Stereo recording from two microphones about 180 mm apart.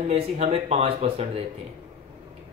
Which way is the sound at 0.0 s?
35° right (ahead or behind).